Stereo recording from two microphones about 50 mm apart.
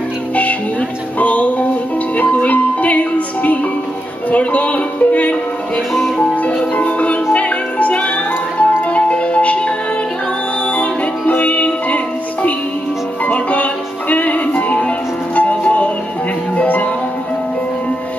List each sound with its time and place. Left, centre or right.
0.4 s music: left